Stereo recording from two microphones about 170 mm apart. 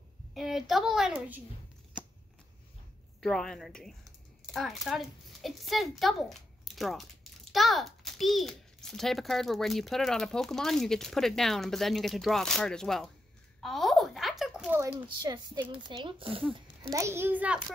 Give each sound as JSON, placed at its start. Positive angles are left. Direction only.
{"t": 0.3, "sound": "a woman's voice", "side_deg": 0}
{"t": 3.2, "sound": "a child's voice", "side_deg": 5}
{"t": 13.6, "sound": "a sound", "side_deg": 0}
{"t": 15.0, "sound": "speech", "side_deg": -25}
{"t": 16.9, "sound": "a child's voice", "side_deg": -15}